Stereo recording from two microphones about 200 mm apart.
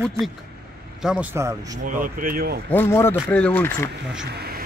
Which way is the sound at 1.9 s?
45° right (ahead or behind).